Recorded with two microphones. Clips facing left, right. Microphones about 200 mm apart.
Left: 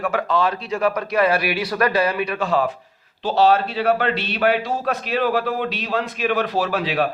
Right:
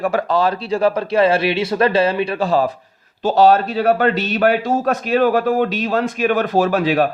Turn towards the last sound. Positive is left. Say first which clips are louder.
# right 6 dB
turn(degrees=-45)  # may be behind; listen again after turning